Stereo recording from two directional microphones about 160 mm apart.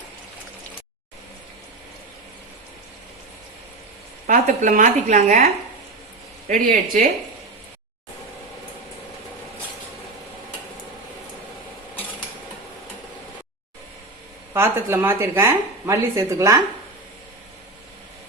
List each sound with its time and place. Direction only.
4.3 s speech: 55° right (ahead or behind)
6.5 s speech: 55° right (ahead or behind)
14.5 s speech: 15° right (ahead or behind)